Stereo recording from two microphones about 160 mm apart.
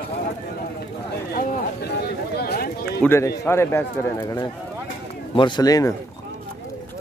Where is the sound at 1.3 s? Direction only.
80° left.